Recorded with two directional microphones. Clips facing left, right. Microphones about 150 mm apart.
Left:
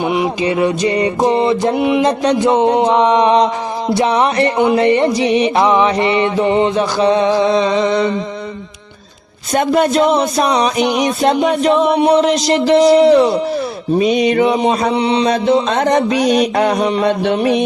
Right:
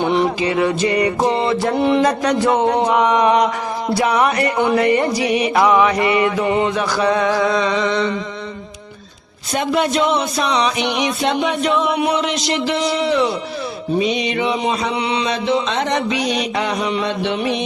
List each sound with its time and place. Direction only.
0.0 s music: 10° left (ahead or behind)
0.4 s music: 20° left (ahead or behind)
4.5 s music: 15° left (ahead or behind); by 8.1 s 35° left (ahead or behind)
9.5 s speech: 45° left (ahead or behind)
14.0 s mantra: 50° left (ahead or behind)
14.9 s speech: 35° left (ahead or behind)
15.3 s mantra: 45° left (ahead or behind)